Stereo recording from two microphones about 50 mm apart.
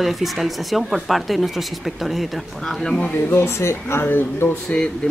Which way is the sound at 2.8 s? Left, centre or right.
Centre.